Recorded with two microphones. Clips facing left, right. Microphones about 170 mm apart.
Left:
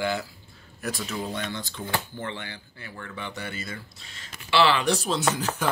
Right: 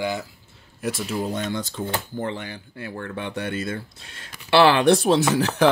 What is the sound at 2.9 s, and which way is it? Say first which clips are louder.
Speech: right 6 dB; 55° right (ahead or behind).